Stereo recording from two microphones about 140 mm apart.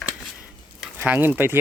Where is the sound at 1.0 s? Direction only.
15° right (ahead or behind).